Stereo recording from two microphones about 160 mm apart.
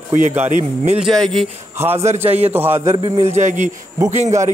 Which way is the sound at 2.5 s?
15° right (ahead or behind).